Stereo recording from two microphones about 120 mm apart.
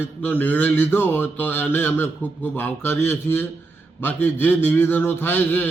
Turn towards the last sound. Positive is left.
turn(degrees=15)  # may be behind; listen again after turning